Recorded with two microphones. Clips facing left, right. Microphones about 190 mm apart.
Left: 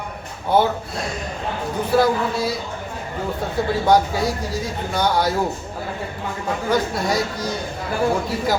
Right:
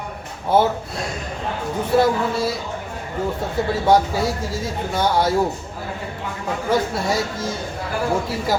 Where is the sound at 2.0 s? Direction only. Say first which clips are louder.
Right 1 dB; centre (ahead or behind).